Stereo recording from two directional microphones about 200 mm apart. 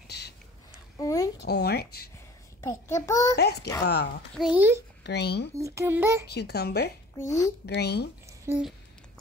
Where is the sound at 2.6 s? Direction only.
15° left (ahead or behind).